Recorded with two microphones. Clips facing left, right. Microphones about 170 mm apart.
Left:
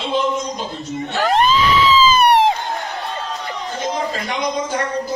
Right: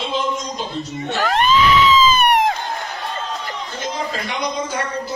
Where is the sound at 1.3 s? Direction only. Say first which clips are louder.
Even; 35° left (ahead or behind).